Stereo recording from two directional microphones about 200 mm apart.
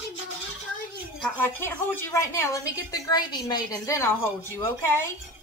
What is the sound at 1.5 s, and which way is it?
A woman's voice, 10° left (ahead or behind).